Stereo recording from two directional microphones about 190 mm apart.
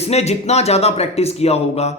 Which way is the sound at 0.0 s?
35° left (ahead or behind).